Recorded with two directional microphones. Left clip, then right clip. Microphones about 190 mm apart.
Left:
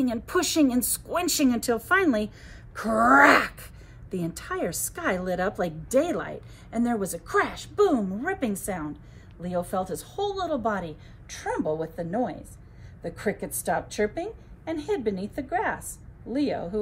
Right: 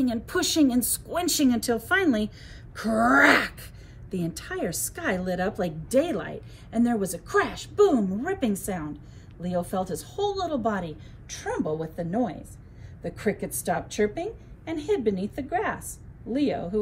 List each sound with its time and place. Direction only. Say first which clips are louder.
0.0 s a woman's voice: even; 40° left (ahead or behind); by 16.8 s 20° left (ahead or behind)